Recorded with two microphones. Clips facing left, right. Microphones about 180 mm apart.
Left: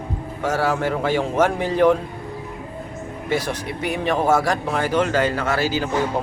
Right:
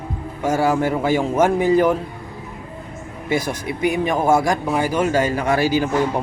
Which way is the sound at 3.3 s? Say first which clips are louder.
Right 2 dB; 10° right (ahead or behind).